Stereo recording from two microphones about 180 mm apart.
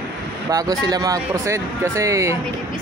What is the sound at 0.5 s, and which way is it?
Speech, 20° right (ahead or behind).